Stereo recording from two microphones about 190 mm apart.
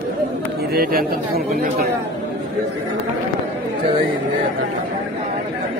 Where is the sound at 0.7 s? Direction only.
50° right (ahead or behind).